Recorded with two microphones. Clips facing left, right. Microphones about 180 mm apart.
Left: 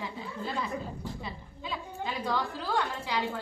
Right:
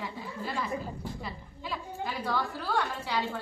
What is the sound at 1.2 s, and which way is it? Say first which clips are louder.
A woman's voice: even; 20° left (ahead or behind).